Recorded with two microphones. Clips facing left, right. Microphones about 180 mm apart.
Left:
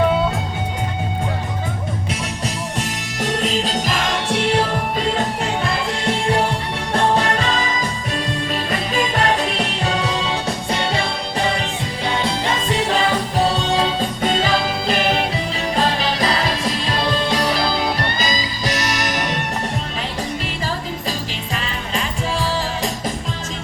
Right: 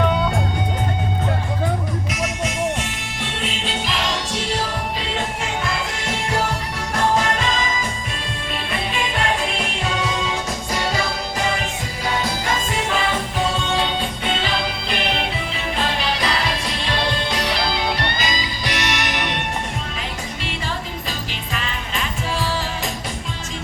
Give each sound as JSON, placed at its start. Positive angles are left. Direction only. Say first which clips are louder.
{"t": 2.2, "sound": "music", "louder": "right 3 dB", "side_deg": 35}
{"t": 5.6, "sound": "music", "louder": "left 4 dB", "side_deg": 35}
{"t": 21.5, "sound": "music", "louder": "left 3 dB", "side_deg": 35}